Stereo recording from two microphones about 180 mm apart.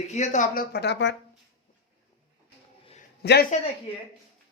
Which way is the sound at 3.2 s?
65° left (ahead or behind).